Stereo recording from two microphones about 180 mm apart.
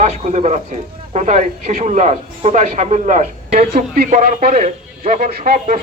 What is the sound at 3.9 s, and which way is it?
A man's voice, 55° right (ahead or behind).